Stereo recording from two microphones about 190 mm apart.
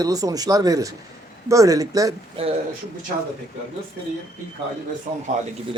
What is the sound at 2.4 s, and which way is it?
Speech, 30° right (ahead or behind).